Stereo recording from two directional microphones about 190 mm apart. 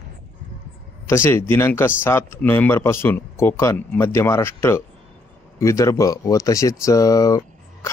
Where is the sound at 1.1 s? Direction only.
15° left (ahead or behind).